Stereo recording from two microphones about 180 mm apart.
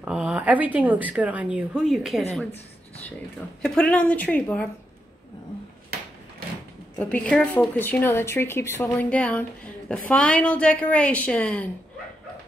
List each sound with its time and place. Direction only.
0.0 s speech: 5° right (ahead or behind)
3.6 s speech: 5° left (ahead or behind)
7.0 s speech: 5° left (ahead or behind)